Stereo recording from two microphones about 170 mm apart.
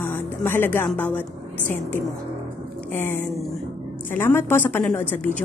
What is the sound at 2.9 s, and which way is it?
A woman's voice, 10° left (ahead or behind).